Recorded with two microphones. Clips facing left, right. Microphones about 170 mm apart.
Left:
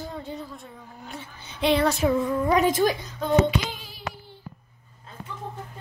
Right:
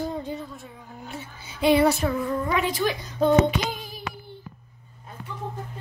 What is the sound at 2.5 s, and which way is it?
Speech, 45° left (ahead or behind).